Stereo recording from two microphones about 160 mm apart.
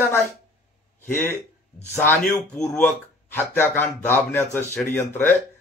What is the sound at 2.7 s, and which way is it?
Speech, 10° left (ahead or behind).